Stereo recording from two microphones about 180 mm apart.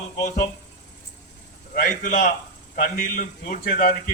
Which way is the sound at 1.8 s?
50° left (ahead or behind).